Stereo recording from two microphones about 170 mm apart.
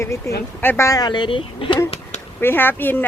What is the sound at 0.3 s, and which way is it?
Speech, 20° left (ahead or behind).